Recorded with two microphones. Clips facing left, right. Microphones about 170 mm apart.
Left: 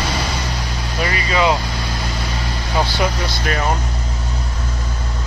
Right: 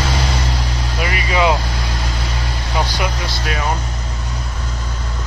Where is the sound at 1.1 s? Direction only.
15° right (ahead or behind).